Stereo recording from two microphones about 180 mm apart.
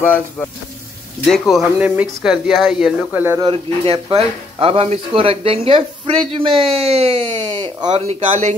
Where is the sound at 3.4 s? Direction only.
30° right (ahead or behind).